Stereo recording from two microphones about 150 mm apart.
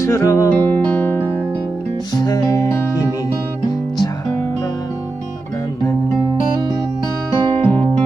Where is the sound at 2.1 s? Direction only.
25° left (ahead or behind).